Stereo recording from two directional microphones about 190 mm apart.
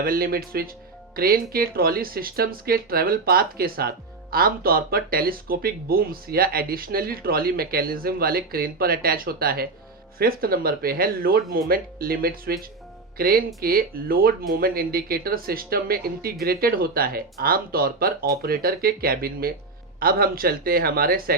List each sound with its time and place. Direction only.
0.0 s speech: 50° right (ahead or behind)